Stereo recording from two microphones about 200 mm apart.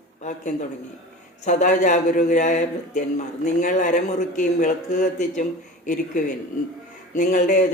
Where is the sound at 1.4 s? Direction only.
40° left (ahead or behind).